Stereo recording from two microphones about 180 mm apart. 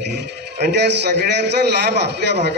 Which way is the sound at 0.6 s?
70° right (ahead or behind).